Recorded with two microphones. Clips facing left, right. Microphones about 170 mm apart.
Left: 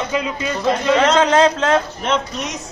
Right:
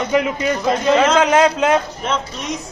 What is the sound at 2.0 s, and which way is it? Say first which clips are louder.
Speech: left 2 dB; centre (ahead or behind).